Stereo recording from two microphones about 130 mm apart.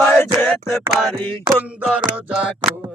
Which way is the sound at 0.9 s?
Centre (ahead or behind).